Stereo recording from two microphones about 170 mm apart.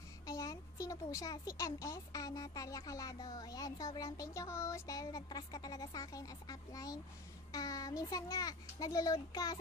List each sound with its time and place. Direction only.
0.3 s speech: 20° left (ahead or behind)